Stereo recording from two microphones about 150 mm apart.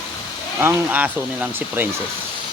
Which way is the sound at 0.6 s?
15° right (ahead or behind).